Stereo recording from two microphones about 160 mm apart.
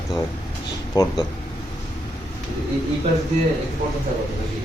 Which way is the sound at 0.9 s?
25° left (ahead or behind).